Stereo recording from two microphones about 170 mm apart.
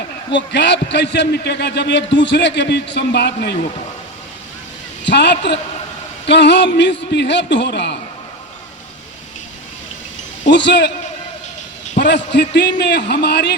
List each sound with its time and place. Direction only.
0.3 s a man's voice: 90° left
5.0 s a man's voice: 85° left
10.4 s a man's voice: 90° left
11.9 s a man's voice: 90° left